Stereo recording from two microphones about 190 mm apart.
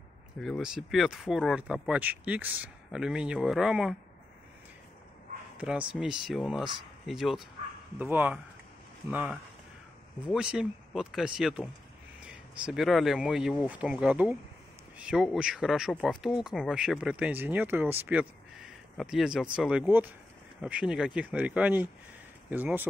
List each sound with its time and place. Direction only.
0.4 s speech: centre (ahead or behind)
5.6 s speech: 5° right (ahead or behind)
10.2 s speech: 5° right (ahead or behind)